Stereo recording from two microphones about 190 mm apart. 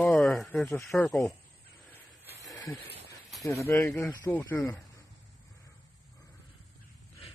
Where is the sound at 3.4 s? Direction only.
15° left (ahead or behind).